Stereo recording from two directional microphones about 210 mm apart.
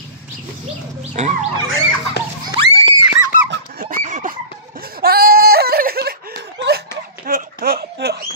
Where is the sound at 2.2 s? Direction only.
50° left (ahead or behind).